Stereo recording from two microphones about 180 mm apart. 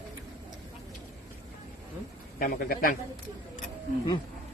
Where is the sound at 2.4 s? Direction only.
55° left (ahead or behind).